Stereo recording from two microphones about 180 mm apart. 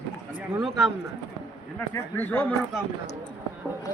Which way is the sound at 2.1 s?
10° left (ahead or behind).